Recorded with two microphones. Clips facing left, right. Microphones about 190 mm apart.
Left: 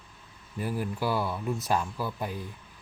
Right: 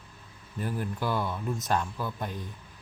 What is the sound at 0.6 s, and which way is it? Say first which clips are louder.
Speech: left 1 dB; 10° left (ahead or behind).